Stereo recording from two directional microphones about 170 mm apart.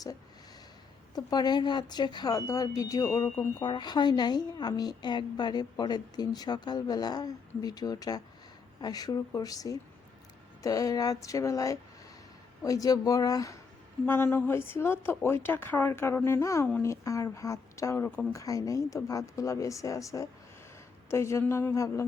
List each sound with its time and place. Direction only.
1.1 s a woman's voice: 25° left (ahead or behind)